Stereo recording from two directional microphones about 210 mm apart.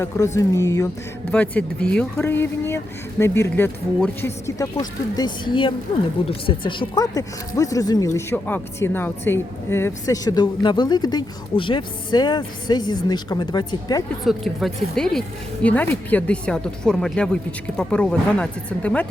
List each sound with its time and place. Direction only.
0.3 s speech: 15° left (ahead or behind)
14.3 s speech: centre (ahead or behind)